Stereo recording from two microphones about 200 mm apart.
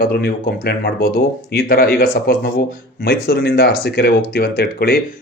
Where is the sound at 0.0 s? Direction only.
50° left (ahead or behind).